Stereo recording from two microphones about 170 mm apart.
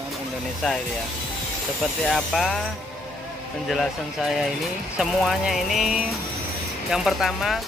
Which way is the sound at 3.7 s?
Centre (ahead or behind).